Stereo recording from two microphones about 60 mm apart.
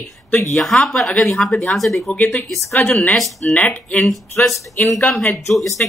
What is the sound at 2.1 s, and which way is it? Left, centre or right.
Speech, left.